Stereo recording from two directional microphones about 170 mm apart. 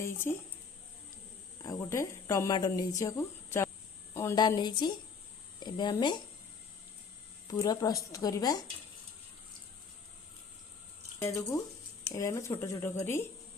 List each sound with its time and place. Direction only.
0.0 s speech: 15° left (ahead or behind)
1.6 s speech: 15° left (ahead or behind)
7.4 s speech: 20° left (ahead or behind)
11.2 s speech: 15° left (ahead or behind)